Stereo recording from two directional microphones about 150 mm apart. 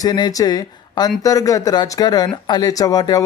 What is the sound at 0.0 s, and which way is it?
Speech, 25° left (ahead or behind).